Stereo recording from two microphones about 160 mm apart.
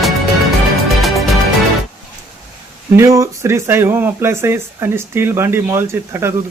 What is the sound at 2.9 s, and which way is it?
Speech, 20° right (ahead or behind).